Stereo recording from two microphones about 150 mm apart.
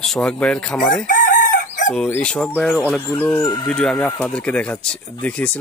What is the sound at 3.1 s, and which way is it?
Speech, 15° left (ahead or behind).